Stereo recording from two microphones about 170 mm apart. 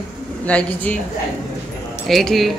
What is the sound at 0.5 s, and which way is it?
Speech, 10° left (ahead or behind).